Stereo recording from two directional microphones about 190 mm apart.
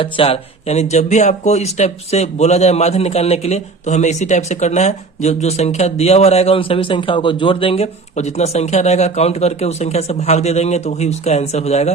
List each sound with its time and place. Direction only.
0.0 s speech: 30° left (ahead or behind)